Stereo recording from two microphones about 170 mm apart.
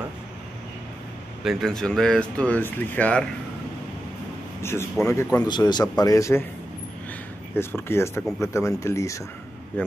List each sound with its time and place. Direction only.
1.4 s speech: centre (ahead or behind)
4.6 s speech: 15° left (ahead or behind)
7.5 s speech: 15° left (ahead or behind)
9.8 s speech: 5° left (ahead or behind)